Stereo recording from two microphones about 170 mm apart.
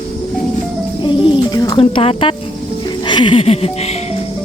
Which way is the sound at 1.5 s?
20° left (ahead or behind).